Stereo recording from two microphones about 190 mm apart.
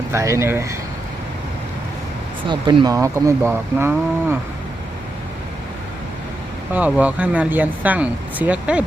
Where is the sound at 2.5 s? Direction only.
20° right (ahead or behind).